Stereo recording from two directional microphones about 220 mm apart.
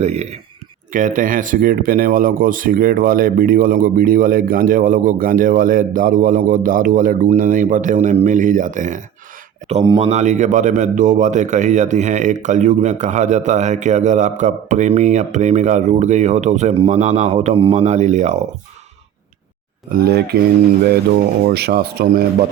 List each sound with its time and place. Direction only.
0.0 s a man's voice: 30° right (ahead or behind)
9.6 s a man's voice: 25° right (ahead or behind)
19.9 s speech: 45° right (ahead or behind)
21.4 s speech: 45° right (ahead or behind)